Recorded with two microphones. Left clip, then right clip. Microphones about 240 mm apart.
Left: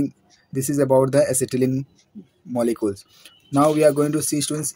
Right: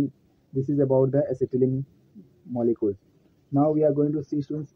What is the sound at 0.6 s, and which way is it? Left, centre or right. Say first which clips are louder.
Speech: left 4 dB; left.